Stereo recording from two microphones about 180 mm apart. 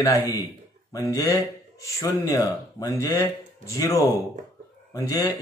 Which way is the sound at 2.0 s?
20° left (ahead or behind).